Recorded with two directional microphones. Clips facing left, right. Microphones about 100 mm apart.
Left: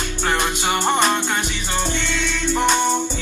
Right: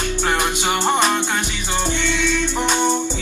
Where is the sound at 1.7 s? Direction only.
15° right (ahead or behind).